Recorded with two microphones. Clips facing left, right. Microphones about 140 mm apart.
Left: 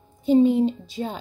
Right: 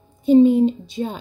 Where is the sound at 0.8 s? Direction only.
20° right (ahead or behind).